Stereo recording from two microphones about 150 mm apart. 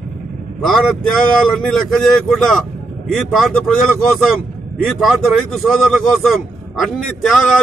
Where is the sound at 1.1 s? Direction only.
Centre (ahead or behind).